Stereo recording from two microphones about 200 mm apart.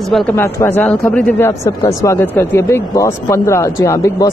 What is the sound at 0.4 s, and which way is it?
Speech, 10° left (ahead or behind).